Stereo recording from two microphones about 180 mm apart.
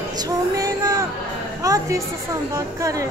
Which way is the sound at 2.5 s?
20° right (ahead or behind).